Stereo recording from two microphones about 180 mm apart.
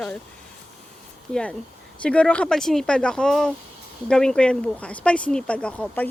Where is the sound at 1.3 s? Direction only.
5° left (ahead or behind).